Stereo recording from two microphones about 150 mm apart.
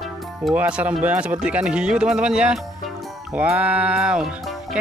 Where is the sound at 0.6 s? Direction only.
10° right (ahead or behind).